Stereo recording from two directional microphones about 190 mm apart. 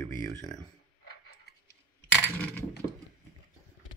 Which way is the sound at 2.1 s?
10° left (ahead or behind).